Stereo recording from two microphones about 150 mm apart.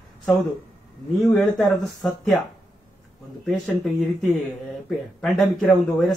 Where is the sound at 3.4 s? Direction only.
Centre (ahead or behind).